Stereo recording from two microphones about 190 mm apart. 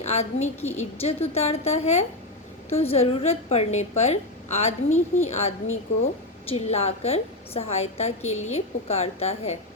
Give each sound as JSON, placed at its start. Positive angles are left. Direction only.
{"t": 0.0, "sound": "a woman's voice", "side_deg": 35}
{"t": 6.5, "sound": "a woman's voice", "side_deg": 35}